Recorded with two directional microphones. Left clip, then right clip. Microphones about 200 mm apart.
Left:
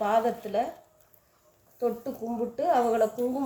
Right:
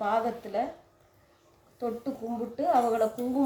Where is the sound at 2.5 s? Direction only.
35° left (ahead or behind).